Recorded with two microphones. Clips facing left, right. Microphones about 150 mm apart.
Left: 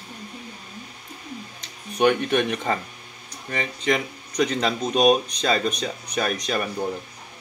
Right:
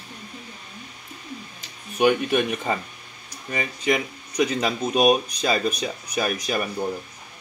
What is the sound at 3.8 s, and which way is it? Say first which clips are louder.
Speech: even; 10° right (ahead or behind).